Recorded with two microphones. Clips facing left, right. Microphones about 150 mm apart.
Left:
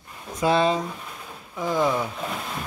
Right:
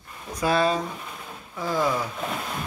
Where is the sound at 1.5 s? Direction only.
20° left (ahead or behind).